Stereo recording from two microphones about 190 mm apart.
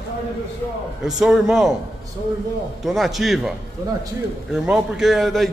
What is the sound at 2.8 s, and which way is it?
Speech, centre (ahead or behind).